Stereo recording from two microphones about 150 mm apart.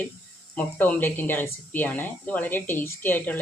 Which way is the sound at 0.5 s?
10° left (ahead or behind).